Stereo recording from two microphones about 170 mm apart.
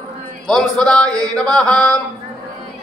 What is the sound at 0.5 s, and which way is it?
Chant, 5° left (ahead or behind).